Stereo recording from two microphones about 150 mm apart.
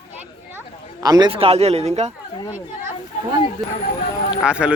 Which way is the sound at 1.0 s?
25° right (ahead or behind).